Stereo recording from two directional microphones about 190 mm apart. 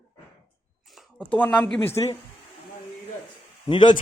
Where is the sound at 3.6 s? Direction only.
25° left (ahead or behind).